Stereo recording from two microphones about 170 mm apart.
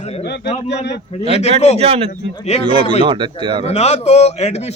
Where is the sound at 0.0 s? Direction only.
40° left (ahead or behind).